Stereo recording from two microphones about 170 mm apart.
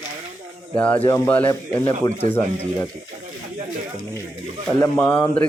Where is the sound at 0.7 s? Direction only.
10° left (ahead or behind).